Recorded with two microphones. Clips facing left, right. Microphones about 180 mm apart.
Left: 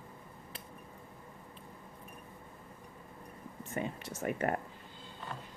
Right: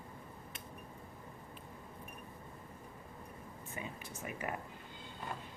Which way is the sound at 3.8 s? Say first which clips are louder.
Left 9 dB; 50° left (ahead or behind).